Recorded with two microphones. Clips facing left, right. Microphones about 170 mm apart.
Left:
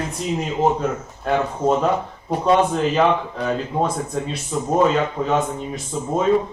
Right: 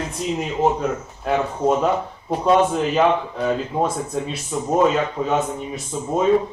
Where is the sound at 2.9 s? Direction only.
5° right (ahead or behind).